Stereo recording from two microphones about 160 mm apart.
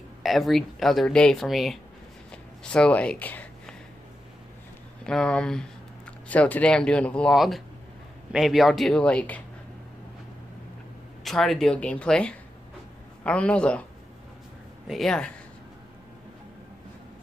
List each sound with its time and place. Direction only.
0.2 s speech: centre (ahead or behind)
5.0 s speech: 5° left (ahead or behind)
11.2 s speech: centre (ahead or behind)
14.9 s speech: centre (ahead or behind)